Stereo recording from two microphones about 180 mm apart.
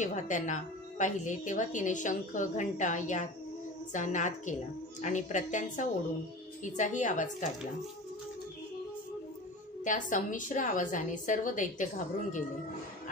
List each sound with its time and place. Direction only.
0.0 s a woman's voice: 45° left (ahead or behind)
9.8 s a woman's voice: 45° left (ahead or behind)